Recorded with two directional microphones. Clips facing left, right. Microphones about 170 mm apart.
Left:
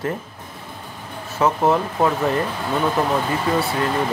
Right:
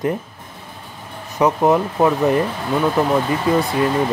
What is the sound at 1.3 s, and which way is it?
Speech, 15° right (ahead or behind).